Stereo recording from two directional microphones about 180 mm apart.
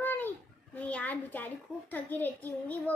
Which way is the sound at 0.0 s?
10° left (ahead or behind).